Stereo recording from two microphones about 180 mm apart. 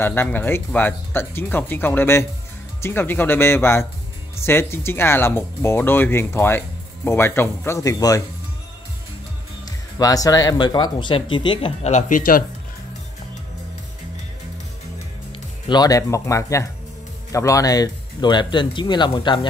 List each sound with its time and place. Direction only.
0.0 s speech: 10° left (ahead or behind)
9.7 s speech: 20° left (ahead or behind); by 12.4 s 50° left (ahead or behind)
15.3 s speech: 25° left (ahead or behind)